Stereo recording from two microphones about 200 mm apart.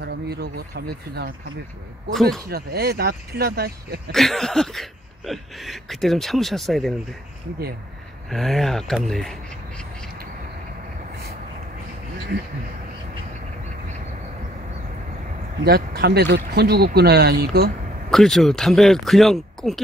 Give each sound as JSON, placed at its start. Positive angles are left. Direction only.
{"t": 0.0, "sound": "speech", "side_deg": -55}
{"t": 2.1, "sound": "speech", "side_deg": 0}
{"t": 2.4, "sound": "speech", "side_deg": -50}
{"t": 4.1, "sound": "speech", "side_deg": 0}
{"t": 8.3, "sound": "speech", "side_deg": 0}
{"t": 15.6, "sound": "speech", "side_deg": -50}
{"t": 18.1, "sound": "speech", "side_deg": 0}